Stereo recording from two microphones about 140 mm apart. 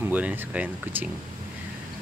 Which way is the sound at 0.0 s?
10° right (ahead or behind).